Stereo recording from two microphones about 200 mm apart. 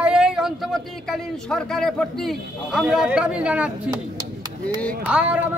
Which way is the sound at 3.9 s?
20° right (ahead or behind).